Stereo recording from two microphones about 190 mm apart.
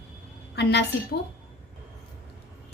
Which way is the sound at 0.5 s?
60° left (ahead or behind).